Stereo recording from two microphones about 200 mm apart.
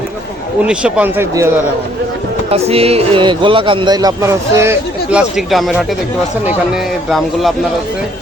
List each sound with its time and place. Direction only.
0.6 s speech: 5° right (ahead or behind)
2.5 s speech: 30° right (ahead or behind); by 5.2 s 10° right (ahead or behind)
5.5 s speech: centre (ahead or behind)